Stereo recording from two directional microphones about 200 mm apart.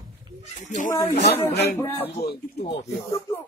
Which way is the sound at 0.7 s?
40° left (ahead or behind).